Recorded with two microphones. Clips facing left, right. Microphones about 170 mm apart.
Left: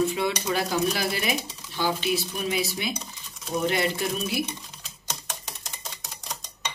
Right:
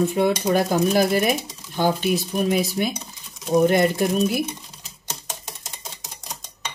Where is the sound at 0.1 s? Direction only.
50° right (ahead or behind).